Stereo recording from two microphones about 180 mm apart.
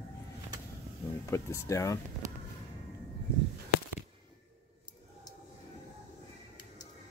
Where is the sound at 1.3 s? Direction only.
15° left (ahead or behind).